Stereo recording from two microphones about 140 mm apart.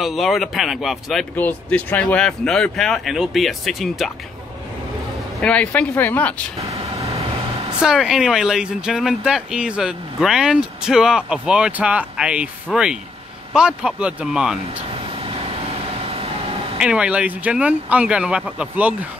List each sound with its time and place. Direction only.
0.0 s speech: centre (ahead or behind)
1.3 s speech: 10° left (ahead or behind)
5.4 s speech: 10° left (ahead or behind)
7.8 s speech: 5° right (ahead or behind)
14.8 s air conditioning: 40° right (ahead or behind)
16.1 s vehicle: 45° right (ahead or behind)
16.7 s speech: 5° right (ahead or behind)